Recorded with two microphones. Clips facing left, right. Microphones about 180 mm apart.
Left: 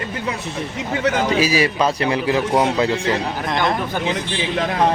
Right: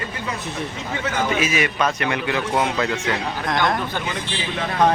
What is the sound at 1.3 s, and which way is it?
A man's voice, 35° left (ahead or behind).